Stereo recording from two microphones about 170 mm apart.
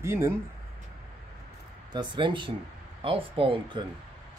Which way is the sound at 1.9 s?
30° right (ahead or behind).